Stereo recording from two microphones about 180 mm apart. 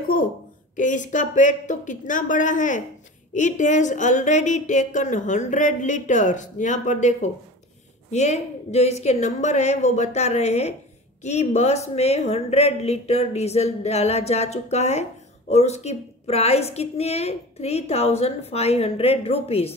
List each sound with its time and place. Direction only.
0.7 s a woman's voice: 45° left (ahead or behind)